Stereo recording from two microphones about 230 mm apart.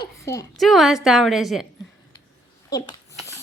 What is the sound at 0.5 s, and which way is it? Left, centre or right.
A woman's voice, centre.